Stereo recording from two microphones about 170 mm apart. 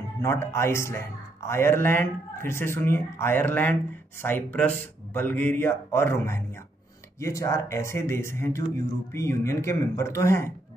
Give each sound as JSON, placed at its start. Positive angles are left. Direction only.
{"t": 0.2, "sound": "speech", "side_deg": 15}